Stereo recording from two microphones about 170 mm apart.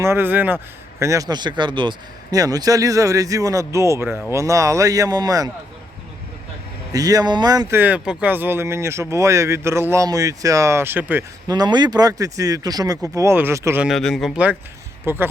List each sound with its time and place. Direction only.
0.0 s speech: 15° right (ahead or behind)
6.9 s speech: 20° right (ahead or behind)
7.8 s speech: 10° right (ahead or behind)
13.8 s speech: centre (ahead or behind)